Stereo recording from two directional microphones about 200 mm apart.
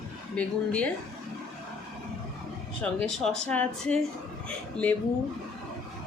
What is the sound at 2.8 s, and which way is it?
Speech, 5° left (ahead or behind).